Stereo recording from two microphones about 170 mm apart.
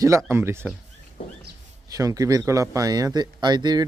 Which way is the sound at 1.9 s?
20° right (ahead or behind).